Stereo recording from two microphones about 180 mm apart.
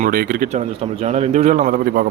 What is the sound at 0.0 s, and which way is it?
Speech, 50° right (ahead or behind).